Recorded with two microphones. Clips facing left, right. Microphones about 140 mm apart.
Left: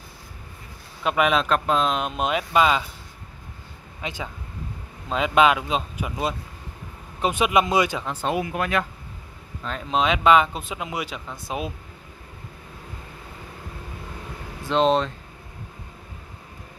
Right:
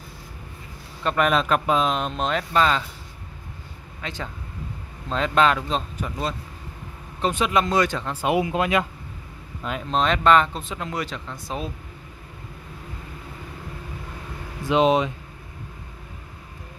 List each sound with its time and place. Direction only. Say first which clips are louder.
1.0 s speech: even; 5° left (ahead or behind)
4.0 s speech: left 1 dB; 10° left (ahead or behind)
8.1 s speech: right 3 dB; 10° right (ahead or behind)
8.4 s speech: right 3 dB; 20° right (ahead or behind)
9.8 s speech: even; 5° left (ahead or behind)
14.7 s speech: right 1 dB; 10° right (ahead or behind)